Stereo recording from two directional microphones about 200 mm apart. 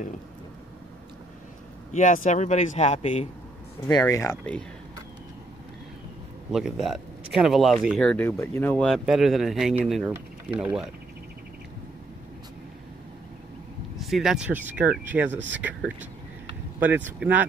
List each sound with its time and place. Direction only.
1.9 s a man's voice: 40° left (ahead or behind)
3.8 s speech: 15° left (ahead or behind)
6.5 s speech: centre (ahead or behind)
14.0 s speech: centre (ahead or behind)
15.3 s speech: 65° right (ahead or behind)
17.2 s speech: 10° right (ahead or behind)